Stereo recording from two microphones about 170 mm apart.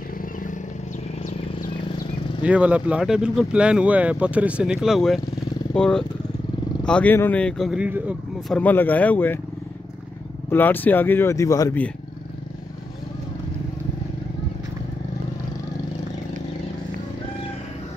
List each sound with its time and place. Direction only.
0.2 s wild animals: 50° left (ahead or behind)
2.4 s speech: 10° right (ahead or behind)
8.5 s speech: 10° left (ahead or behind)
10.5 s speech: 10° left (ahead or behind)